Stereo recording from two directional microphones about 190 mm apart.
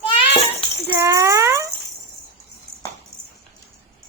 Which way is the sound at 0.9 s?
15° right (ahead or behind).